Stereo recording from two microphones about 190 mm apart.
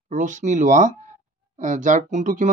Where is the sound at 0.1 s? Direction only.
40° right (ahead or behind).